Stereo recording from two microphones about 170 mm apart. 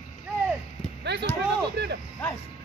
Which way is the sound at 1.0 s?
80° right.